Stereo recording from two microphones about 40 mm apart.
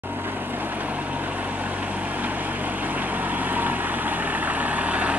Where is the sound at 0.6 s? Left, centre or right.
Right.